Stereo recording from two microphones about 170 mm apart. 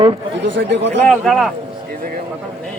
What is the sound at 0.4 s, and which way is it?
Speech, 90° right.